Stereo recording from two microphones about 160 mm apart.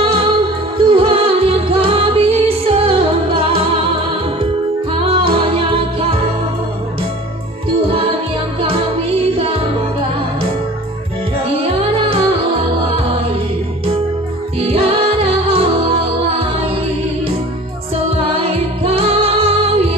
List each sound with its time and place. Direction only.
0.0 s music: 35° right (ahead or behind)
5.0 s music: 35° right (ahead or behind)
7.8 s music: 35° right (ahead or behind)
11.6 s music: 35° right (ahead or behind)
14.6 s music: 40° right (ahead or behind)
17.9 s music: 35° right (ahead or behind)